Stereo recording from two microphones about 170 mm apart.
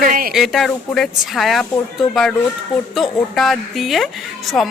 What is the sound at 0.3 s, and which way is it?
A woman's voice, centre (ahead or behind).